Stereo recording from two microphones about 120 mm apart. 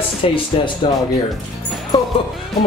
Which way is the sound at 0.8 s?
40° left (ahead or behind).